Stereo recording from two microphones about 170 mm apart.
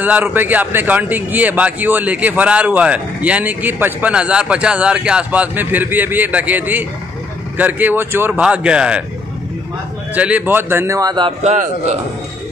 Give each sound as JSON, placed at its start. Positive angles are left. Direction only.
{"t": 0.0, "sound": "a man's voice", "side_deg": -10}
{"t": 10.1, "sound": "a man's voice", "side_deg": -10}
{"t": 11.4, "sound": "a man's voice", "side_deg": -45}